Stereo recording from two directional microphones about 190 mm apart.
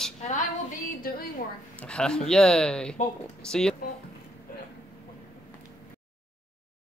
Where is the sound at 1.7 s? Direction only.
5° left (ahead or behind).